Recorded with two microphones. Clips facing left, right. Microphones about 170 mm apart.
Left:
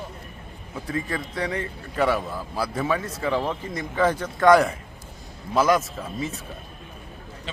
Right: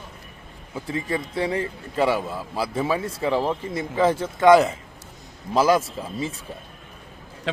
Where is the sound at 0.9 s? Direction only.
25° right (ahead or behind).